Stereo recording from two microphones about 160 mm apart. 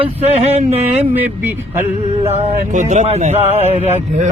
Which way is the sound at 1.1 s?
10° right (ahead or behind).